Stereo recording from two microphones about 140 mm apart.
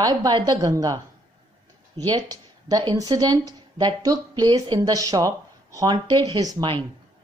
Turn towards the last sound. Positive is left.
turn(degrees=-30)  # may be behind; listen again after turning